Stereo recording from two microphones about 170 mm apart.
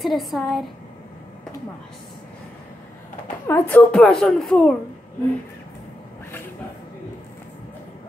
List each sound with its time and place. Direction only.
0.0 s a woman's voice: centre (ahead or behind)
3.4 s a woman's voice: 10° left (ahead or behind)